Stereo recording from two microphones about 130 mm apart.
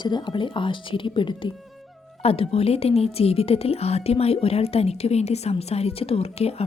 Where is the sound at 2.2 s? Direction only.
50° left (ahead or behind).